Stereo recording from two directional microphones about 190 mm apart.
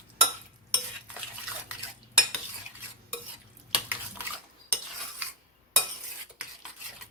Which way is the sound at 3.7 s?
10° right (ahead or behind).